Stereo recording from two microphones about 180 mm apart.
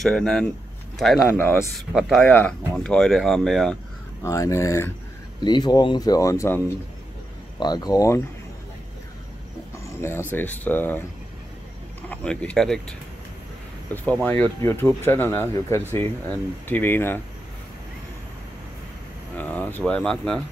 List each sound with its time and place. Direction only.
0.0 s speech: 5° left (ahead or behind)
4.2 s speech: 15° left (ahead or behind)
10.0 s speech: 10° left (ahead or behind)
12.1 s speech: 5° left (ahead or behind)
19.3 s speech: 10° left (ahead or behind)